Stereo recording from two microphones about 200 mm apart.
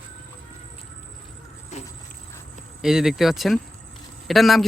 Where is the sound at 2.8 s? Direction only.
Centre (ahead or behind).